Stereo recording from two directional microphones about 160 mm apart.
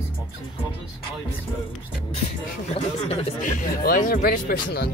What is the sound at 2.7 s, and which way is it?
Speech, 40° left (ahead or behind).